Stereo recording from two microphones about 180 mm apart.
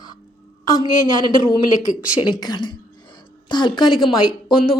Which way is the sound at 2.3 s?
25° left (ahead or behind).